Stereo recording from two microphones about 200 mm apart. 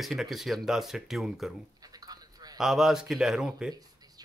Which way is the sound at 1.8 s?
20° right (ahead or behind).